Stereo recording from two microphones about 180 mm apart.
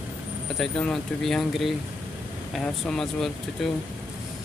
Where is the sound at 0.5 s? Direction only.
Centre (ahead or behind).